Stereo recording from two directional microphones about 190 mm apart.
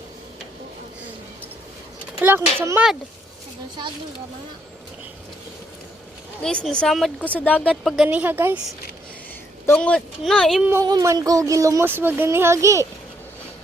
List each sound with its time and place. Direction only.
2.2 s speech: 10° right (ahead or behind)
6.4 s speech: 5° left (ahead or behind)
7.7 s speech: 5° right (ahead or behind)
9.6 s speech: 5° left (ahead or behind)
10.7 s speech: 15° right (ahead or behind)